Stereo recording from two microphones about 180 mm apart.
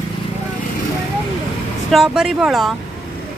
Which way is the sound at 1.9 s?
Centre (ahead or behind).